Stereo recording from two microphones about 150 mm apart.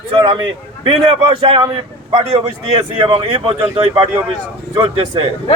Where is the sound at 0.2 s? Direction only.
30° right (ahead or behind).